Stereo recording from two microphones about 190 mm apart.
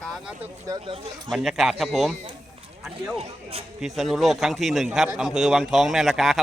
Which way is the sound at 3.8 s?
Centre (ahead or behind).